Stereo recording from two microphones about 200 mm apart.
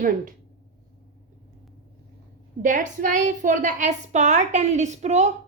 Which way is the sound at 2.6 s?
40° right (ahead or behind).